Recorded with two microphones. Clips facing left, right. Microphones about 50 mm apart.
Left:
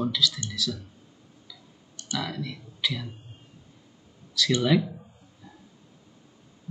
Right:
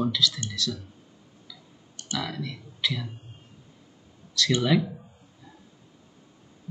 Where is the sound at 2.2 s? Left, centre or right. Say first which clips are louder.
Even; centre.